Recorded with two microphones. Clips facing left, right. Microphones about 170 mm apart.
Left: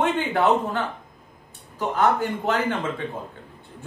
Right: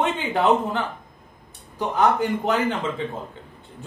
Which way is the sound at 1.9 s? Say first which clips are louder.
Right 1 dB; 15° right (ahead or behind).